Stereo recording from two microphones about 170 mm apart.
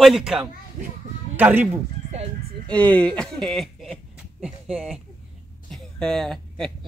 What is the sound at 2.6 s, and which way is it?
Speech, 10° left (ahead or behind).